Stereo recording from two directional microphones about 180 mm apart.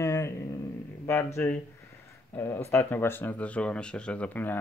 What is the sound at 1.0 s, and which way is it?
Speech, 15° left (ahead or behind).